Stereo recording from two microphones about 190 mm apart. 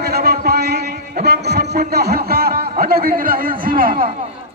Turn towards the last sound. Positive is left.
turn(degrees=-50)  # may be behind; listen again after turning